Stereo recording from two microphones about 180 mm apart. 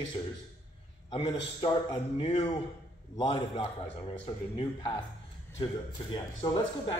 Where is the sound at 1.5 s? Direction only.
30° left (ahead or behind).